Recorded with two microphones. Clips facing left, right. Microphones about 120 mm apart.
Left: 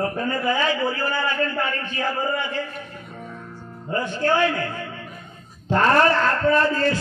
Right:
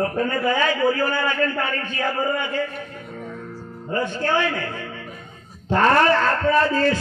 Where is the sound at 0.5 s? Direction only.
50° right (ahead or behind).